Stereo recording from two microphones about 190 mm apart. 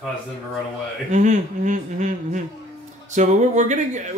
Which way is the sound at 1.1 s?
40° right (ahead or behind).